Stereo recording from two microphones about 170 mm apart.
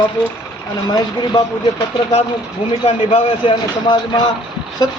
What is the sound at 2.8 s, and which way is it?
A man's voice, 35° left (ahead or behind).